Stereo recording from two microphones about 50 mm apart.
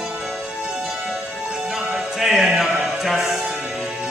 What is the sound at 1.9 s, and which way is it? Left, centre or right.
Music, centre.